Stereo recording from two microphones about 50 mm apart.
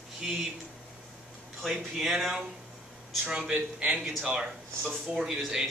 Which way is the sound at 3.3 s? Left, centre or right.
Centre.